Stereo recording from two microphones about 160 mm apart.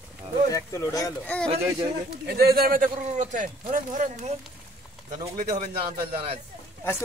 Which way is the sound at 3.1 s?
50° right (ahead or behind).